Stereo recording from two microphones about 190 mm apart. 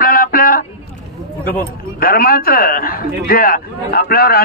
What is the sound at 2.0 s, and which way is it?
A man's voice, 50° left (ahead or behind).